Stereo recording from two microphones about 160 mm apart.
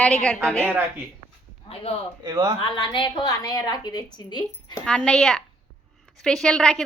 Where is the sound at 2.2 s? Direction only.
25° right (ahead or behind).